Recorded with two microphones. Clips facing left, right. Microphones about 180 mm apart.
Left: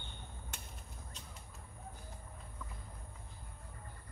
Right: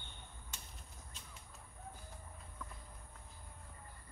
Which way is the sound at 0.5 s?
55° left (ahead or behind).